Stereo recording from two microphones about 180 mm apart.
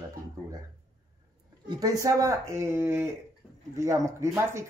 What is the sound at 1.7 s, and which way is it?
Speech, 20° right (ahead or behind).